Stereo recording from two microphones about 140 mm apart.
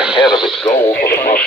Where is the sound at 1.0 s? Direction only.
90° left.